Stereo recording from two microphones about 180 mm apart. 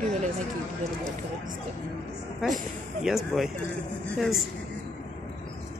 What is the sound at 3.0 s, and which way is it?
Speech, centre (ahead or behind).